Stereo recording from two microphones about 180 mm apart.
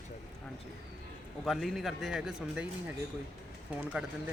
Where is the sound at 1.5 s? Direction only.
Centre (ahead or behind).